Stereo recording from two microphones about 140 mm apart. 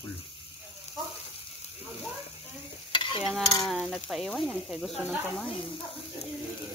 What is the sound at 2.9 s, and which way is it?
Stir, 35° left (ahead or behind).